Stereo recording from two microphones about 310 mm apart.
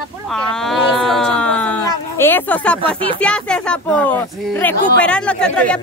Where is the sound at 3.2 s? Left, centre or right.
Centre.